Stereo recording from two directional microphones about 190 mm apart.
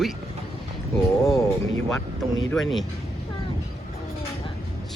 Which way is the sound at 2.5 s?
Centre (ahead or behind).